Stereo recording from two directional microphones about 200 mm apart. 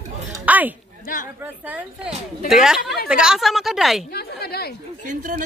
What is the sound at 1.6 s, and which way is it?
Speech, 10° right (ahead or behind).